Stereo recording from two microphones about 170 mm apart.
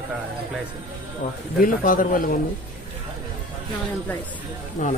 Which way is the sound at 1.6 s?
55° left (ahead or behind).